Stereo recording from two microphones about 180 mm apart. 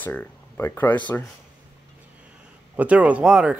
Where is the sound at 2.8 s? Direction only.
5° right (ahead or behind).